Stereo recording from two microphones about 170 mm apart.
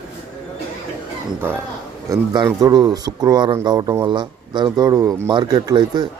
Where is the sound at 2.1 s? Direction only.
25° right (ahead or behind).